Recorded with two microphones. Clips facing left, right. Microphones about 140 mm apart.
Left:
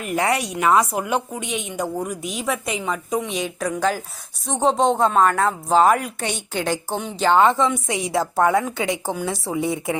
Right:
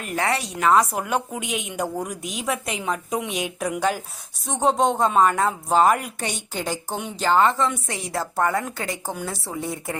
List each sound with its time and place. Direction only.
0.6 s a woman's voice: 5° left (ahead or behind)
9.6 s speech: 90° left